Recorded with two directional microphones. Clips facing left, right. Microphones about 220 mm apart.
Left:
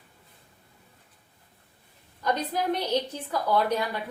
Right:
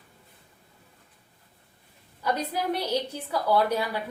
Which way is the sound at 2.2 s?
10° right (ahead or behind).